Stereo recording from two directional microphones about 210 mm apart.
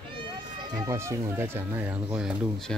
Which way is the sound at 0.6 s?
15° right (ahead or behind).